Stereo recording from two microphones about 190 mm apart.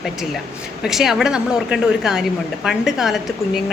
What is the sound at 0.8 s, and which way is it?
Speech, centre (ahead or behind).